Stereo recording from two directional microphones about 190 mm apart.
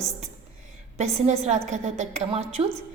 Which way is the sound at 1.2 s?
35° right (ahead or behind).